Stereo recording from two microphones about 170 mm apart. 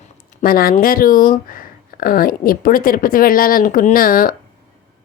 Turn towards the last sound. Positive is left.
turn(degrees=55)  # may be behind; listen again after turning